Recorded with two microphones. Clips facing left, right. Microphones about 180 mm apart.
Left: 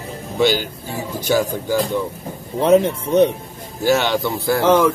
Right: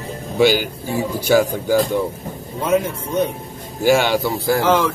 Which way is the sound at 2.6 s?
30° left (ahead or behind).